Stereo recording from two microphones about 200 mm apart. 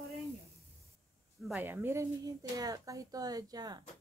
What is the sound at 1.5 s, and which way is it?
Speech, 10° right (ahead or behind).